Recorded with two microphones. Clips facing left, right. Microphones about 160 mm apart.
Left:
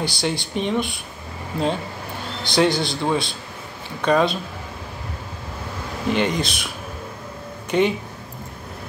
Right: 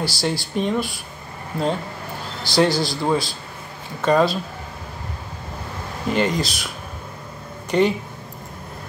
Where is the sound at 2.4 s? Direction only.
20° left (ahead or behind).